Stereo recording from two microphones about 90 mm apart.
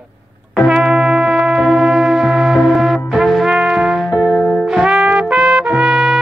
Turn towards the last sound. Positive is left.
turn(degrees=-5)  # may be behind; listen again after turning